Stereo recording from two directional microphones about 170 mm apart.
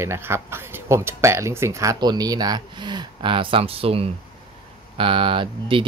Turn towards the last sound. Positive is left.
turn(degrees=-30)  # may be behind; listen again after turning